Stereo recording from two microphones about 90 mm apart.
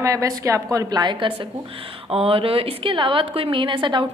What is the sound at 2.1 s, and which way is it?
A woman's voice, 90° right.